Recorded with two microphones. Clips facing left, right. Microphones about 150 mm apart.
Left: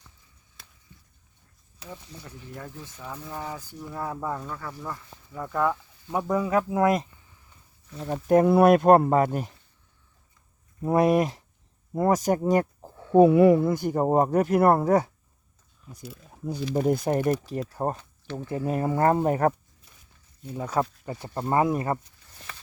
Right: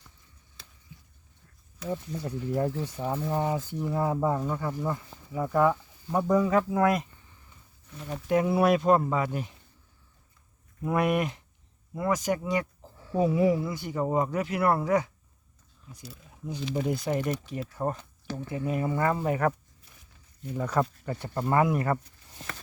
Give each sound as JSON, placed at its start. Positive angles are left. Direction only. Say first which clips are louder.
{"t": 2.6, "sound": "speech", "louder": "right 11 dB", "side_deg": -30}
{"t": 5.4, "sound": "speech", "louder": "right 2 dB", "side_deg": -5}
{"t": 6.1, "sound": "speech", "louder": "right 1 dB", "side_deg": 5}
{"t": 8.1, "sound": "speech", "louder": "left 6 dB", "side_deg": 45}
{"t": 10.8, "sound": "speech", "louder": "left 5 dB", "side_deg": 35}
{"t": 13.1, "sound": "speech", "louder": "left 8 dB", "side_deg": 60}
{"t": 17.5, "sound": "speech", "louder": "left 3 dB", "side_deg": 35}
{"t": 20.4, "sound": "speech", "louder": "even", "side_deg": 15}
{"t": 21.4, "sound": "speech", "louder": "left 1 dB", "side_deg": 25}